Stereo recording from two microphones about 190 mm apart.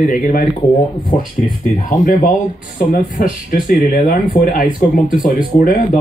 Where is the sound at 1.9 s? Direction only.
40° left (ahead or behind).